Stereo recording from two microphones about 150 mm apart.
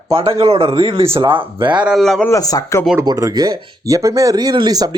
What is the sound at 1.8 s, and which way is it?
Speech, 5° right (ahead or behind).